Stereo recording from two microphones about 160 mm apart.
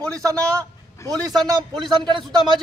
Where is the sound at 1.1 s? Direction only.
25° right (ahead or behind).